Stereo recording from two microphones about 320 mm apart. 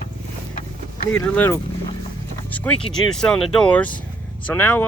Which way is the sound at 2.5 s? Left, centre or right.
Centre.